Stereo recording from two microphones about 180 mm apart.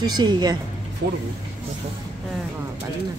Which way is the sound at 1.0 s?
65° right (ahead or behind).